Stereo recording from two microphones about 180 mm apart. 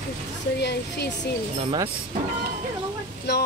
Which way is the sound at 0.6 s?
70° left (ahead or behind).